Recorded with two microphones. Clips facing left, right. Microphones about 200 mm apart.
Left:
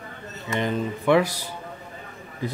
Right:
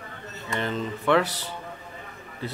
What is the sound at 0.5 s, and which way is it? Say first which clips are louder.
Speech: left 3 dB; 15° left (ahead or behind).